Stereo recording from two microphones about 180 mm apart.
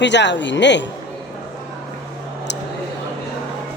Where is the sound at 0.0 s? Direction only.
80° left.